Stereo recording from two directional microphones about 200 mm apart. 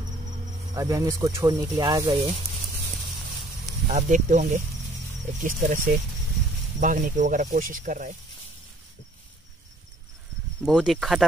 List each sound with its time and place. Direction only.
0.7 s speech: 15° right (ahead or behind)
3.9 s speech: 35° right (ahead or behind)
10.6 s speech: centre (ahead or behind)